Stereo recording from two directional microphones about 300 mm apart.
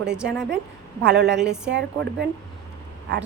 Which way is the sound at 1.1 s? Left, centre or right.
Right.